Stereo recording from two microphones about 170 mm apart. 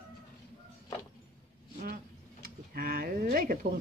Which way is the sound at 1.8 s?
55° right (ahead or behind).